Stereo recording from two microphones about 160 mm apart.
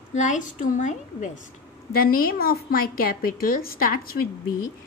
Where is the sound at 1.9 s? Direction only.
65° left (ahead or behind).